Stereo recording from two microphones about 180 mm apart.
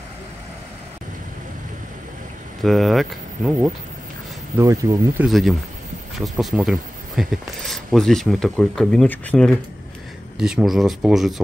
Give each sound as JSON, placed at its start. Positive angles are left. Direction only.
{"t": 2.6, "sound": "speech", "side_deg": 0}
{"t": 4.6, "sound": "speech", "side_deg": -15}
{"t": 6.1, "sound": "speech", "side_deg": 0}